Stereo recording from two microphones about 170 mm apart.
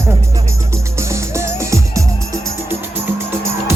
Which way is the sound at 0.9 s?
15° right (ahead or behind).